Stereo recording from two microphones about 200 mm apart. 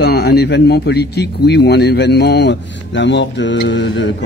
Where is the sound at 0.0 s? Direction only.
55° left (ahead or behind).